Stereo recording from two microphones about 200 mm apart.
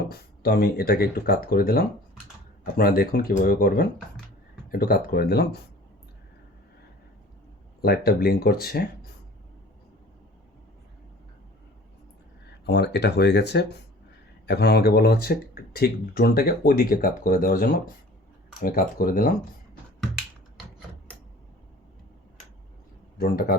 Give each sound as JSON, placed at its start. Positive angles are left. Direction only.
{"t": 0.1, "sound": "speech", "side_deg": 50}
{"t": 7.8, "sound": "speech", "side_deg": 50}
{"t": 12.6, "sound": "speech", "side_deg": 55}
{"t": 23.2, "sound": "speech", "side_deg": 50}